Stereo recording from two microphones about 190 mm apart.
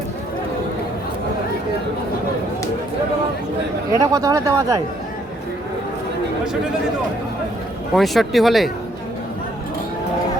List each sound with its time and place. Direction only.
3.9 s speech: 20° right (ahead or behind)
7.9 s speech: centre (ahead or behind)